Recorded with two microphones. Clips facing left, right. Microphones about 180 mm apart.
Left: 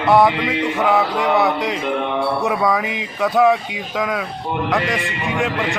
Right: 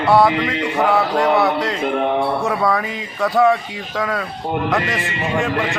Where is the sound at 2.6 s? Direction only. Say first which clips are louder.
Even; centre (ahead or behind).